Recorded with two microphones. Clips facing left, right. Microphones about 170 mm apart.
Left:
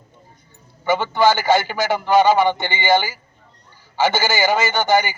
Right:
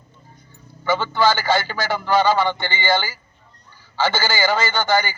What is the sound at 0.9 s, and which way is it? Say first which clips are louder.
A man's voice: left 2 dB; 20° left (ahead or behind).